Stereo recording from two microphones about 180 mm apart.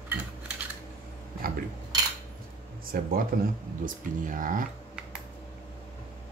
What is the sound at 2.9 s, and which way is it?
Speech, 55° right (ahead or behind).